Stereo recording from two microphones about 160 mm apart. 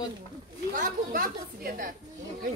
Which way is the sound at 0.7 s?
55° right (ahead or behind).